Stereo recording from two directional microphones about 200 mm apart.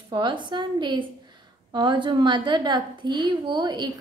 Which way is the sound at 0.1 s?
25° right (ahead or behind).